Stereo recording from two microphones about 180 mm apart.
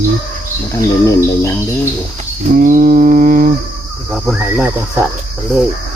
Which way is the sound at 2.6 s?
50° right (ahead or behind).